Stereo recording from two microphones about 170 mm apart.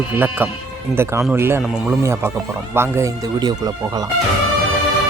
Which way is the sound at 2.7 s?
15° right (ahead or behind).